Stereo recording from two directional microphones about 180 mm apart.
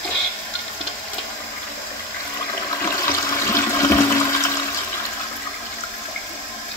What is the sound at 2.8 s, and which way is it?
Toilet flush, 15° left (ahead or behind).